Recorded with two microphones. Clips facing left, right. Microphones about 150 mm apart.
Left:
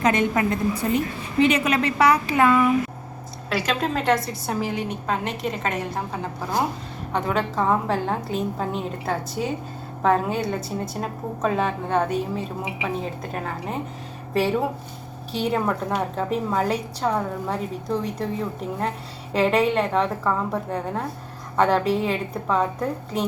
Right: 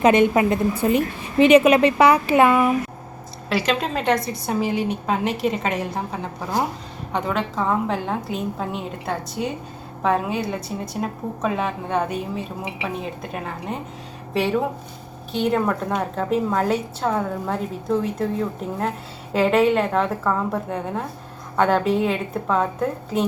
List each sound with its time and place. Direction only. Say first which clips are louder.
0.0 s a woman's voice: right 5 dB; 20° right (ahead or behind)
3.5 s a woman's voice: right 2 dB; centre (ahead or behind)